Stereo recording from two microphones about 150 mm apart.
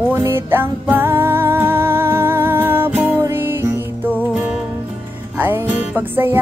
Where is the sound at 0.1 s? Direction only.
15° right (ahead or behind).